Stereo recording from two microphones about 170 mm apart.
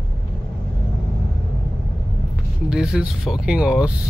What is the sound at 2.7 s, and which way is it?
Speech, 5° right (ahead or behind).